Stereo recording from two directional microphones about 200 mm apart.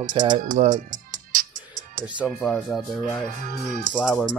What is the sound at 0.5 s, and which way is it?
Speech, 40° right (ahead or behind).